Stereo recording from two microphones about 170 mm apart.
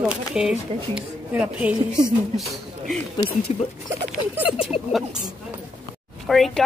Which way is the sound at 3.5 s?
40° left (ahead or behind).